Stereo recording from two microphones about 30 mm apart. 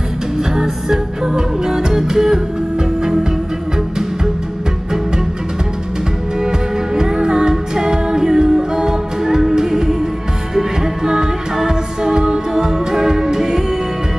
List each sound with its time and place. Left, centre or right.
0.4 s music: centre
7.0 s music: right